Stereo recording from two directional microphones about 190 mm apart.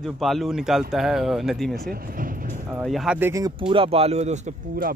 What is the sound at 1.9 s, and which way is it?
Vehicle, 50° right (ahead or behind).